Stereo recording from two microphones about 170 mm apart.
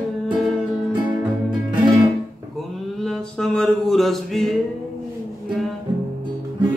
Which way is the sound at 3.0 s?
Centre (ahead or behind).